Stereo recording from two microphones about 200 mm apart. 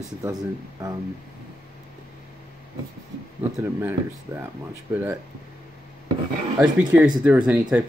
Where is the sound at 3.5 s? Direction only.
15° right (ahead or behind).